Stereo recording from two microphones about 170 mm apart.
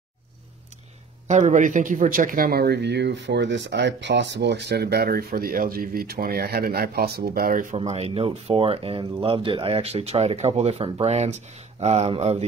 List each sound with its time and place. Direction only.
1.2 s speech: 45° right (ahead or behind)
7.7 s speech: 35° right (ahead or behind)